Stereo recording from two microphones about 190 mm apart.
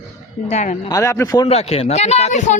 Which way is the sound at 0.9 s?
15° left (ahead or behind).